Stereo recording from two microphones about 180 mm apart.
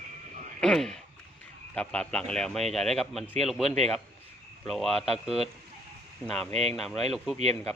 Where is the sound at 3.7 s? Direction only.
40° right (ahead or behind).